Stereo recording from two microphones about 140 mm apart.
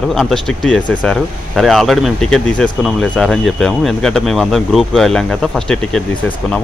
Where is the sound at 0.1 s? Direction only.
5° left (ahead or behind).